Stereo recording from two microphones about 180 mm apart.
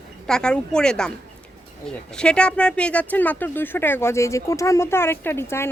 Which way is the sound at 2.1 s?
5° left (ahead or behind).